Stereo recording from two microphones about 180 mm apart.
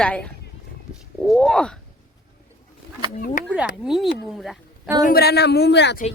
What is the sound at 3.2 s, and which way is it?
Speech, 50° left (ahead or behind).